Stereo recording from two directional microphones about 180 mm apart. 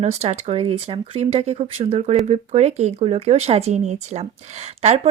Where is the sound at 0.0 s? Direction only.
35° right (ahead or behind).